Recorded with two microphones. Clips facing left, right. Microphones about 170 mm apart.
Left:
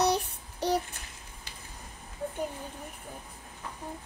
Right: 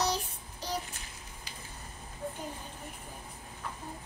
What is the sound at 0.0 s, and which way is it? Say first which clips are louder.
Child singing: left 5 dB; 65° left (ahead or behind).